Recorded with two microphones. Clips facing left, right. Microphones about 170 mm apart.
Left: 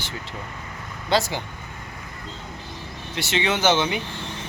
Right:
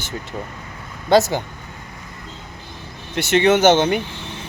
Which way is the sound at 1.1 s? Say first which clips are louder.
Right 8 dB; 45° right (ahead or behind).